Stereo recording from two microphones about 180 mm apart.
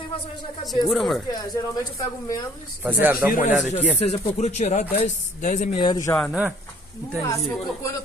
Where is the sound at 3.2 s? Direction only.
5° right (ahead or behind).